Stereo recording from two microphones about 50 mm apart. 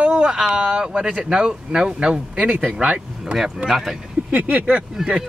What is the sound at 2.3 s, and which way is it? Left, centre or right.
Speech, right.